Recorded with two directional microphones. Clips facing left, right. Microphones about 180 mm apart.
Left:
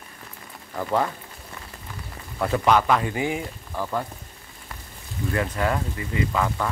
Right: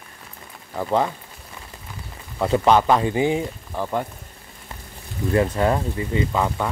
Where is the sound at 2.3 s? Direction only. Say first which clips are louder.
Right 3 dB; 20° right (ahead or behind).